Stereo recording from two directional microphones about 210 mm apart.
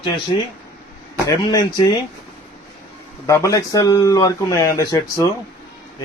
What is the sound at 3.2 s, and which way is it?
Speech, 15° left (ahead or behind).